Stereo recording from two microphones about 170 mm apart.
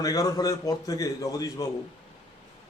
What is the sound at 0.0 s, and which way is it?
A man's voice, 20° left (ahead or behind).